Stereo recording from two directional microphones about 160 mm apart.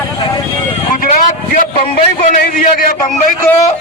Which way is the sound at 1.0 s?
55° left (ahead or behind).